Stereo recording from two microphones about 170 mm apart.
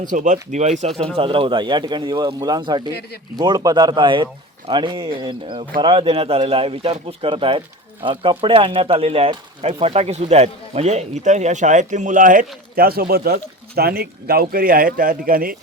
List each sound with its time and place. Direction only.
0.1 s speech: 50° right (ahead or behind)
1.1 s speech: 30° right (ahead or behind); by 15.5 s 60° right (ahead or behind)